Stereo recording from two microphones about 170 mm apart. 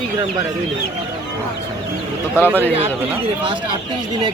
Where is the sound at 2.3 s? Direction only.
10° right (ahead or behind).